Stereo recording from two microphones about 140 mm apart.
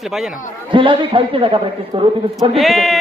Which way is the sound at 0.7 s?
35° right (ahead or behind).